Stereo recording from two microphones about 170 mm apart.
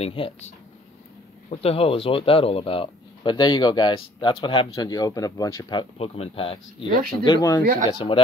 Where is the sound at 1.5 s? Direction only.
35° left (ahead or behind).